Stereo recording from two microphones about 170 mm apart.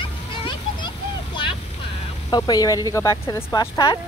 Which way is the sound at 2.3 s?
25° left (ahead or behind).